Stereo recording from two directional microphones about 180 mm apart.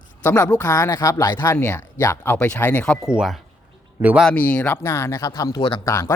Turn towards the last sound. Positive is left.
turn(degrees=15)  # may be behind; listen again after turning